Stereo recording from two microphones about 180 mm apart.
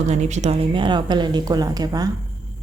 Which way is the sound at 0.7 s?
25° right (ahead or behind).